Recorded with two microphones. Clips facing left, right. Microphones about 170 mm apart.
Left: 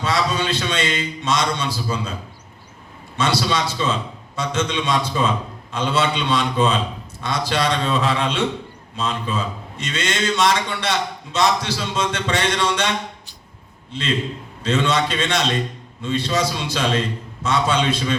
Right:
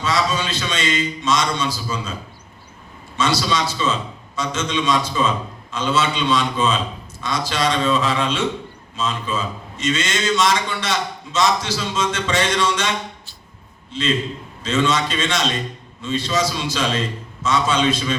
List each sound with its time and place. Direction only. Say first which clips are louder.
0.0 s a man's voice: even; 60° left (ahead or behind)
3.2 s a man's voice: even; 60° left (ahead or behind)
13.9 s a man's voice: right 2 dB; 60° left (ahead or behind)